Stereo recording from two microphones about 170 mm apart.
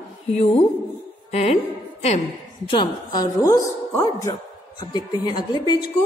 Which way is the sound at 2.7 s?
25° left (ahead or behind).